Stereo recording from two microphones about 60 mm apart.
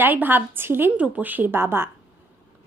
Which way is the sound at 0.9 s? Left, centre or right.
Right.